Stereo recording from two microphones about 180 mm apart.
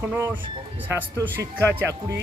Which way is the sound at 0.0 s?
10° right (ahead or behind).